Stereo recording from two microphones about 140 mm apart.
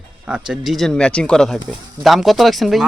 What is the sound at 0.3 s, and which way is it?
Speech, 5° right (ahead or behind).